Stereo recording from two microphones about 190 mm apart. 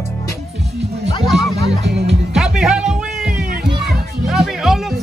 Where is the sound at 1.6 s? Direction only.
65° right (ahead or behind).